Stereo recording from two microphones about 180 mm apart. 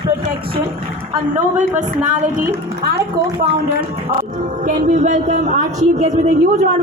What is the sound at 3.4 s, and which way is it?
A man's voice, 35° right (ahead or behind).